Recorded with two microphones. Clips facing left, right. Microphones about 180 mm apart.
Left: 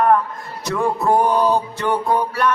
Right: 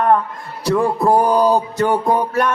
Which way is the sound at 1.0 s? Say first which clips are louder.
Right 2 dB; 35° right (ahead or behind).